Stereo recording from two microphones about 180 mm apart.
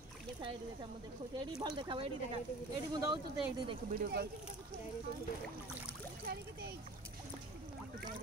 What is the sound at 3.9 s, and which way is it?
Speech, 60° right (ahead or behind).